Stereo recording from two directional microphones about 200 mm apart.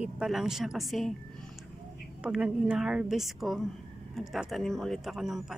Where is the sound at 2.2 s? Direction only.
5° right (ahead or behind).